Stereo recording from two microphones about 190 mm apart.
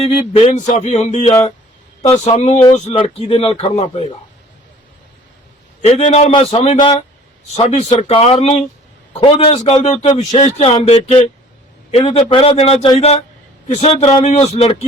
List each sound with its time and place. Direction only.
0.0 s a man's voice: 30° left (ahead or behind)
5.8 s a man's voice: 30° left (ahead or behind)